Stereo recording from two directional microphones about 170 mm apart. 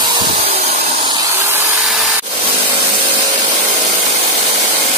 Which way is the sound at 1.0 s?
25° right (ahead or behind).